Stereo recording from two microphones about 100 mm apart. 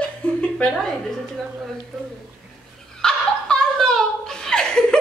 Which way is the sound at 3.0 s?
5° left (ahead or behind).